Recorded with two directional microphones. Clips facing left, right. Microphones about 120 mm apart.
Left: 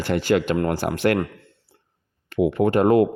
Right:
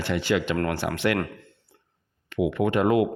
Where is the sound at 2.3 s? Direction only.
40° left (ahead or behind).